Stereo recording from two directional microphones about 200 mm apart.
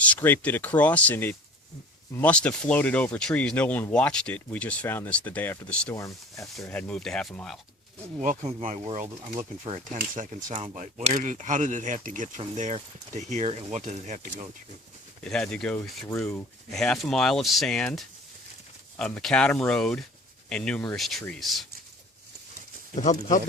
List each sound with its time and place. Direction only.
0.0 s speech: 10° left (ahead or behind)
8.2 s speech: 35° right (ahead or behind)
15.2 s speech: 5° left (ahead or behind)